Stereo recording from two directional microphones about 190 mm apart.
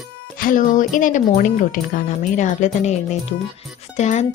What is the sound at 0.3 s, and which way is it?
Music, 45° left (ahead or behind).